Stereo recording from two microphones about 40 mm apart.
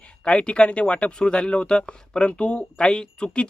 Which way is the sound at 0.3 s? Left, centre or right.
Left.